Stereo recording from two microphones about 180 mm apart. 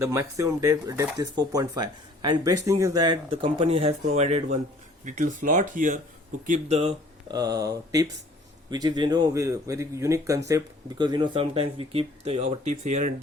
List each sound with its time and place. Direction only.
0.0 s speech: 15° right (ahead or behind); by 6.9 s 35° right (ahead or behind)
7.3 s speech: 20° right (ahead or behind); by 13.1 s 40° right (ahead or behind)